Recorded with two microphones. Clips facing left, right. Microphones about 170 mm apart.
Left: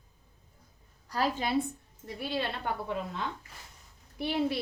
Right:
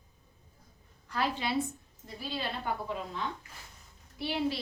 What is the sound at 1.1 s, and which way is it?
Speech, 40° left (ahead or behind).